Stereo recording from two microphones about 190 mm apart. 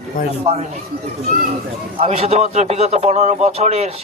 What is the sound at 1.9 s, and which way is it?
Speech, 35° right (ahead or behind).